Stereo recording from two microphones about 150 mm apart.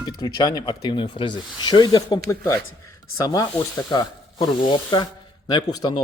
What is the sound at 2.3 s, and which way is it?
A man's voice, 20° left (ahead or behind).